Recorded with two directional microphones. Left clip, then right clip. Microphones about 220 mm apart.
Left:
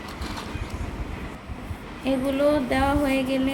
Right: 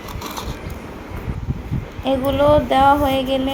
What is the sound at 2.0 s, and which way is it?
Speech, centre (ahead or behind).